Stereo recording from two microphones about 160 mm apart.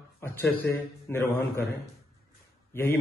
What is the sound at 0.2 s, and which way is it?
A man's voice, 10° left (ahead or behind).